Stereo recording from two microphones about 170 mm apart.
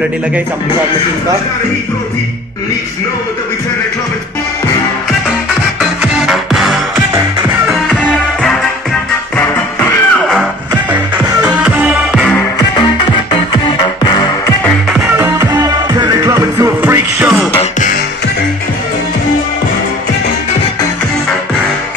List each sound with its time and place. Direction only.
5.8 s music: centre (ahead or behind)
8.0 s music: 5° left (ahead or behind)
9.8 s music: 10° left (ahead or behind)
11.4 s music: 5° right (ahead or behind)
12.5 s music: 25° left (ahead or behind)
14.9 s music: 5° right (ahead or behind)
17.6 s music: 50° left (ahead or behind)